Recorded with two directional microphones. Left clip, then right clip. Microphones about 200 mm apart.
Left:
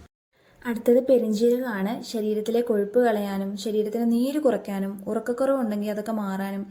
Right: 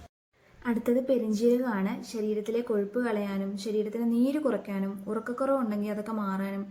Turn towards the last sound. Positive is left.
turn(degrees=25)  # may be behind; listen again after turning